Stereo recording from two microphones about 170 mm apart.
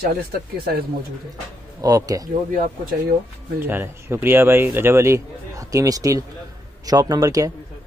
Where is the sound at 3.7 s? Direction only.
15° right (ahead or behind).